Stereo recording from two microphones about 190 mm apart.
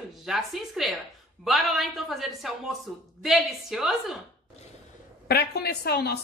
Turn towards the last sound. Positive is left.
turn(degrees=60)  # may be behind; listen again after turning